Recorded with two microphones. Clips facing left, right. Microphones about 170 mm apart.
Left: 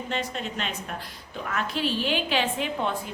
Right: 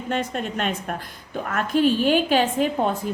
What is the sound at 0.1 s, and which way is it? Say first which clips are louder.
A woman's voice: right 7 dB; 50° right (ahead or behind).